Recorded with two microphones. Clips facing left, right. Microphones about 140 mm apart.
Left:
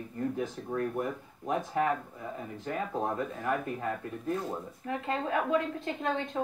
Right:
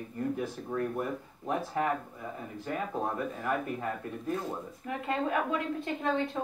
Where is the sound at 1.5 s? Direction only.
20° left (ahead or behind).